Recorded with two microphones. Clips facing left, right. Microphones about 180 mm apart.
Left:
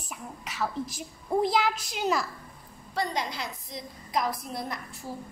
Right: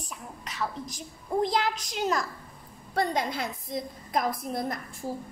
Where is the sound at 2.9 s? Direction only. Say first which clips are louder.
Right 3 dB; 50° right (ahead or behind).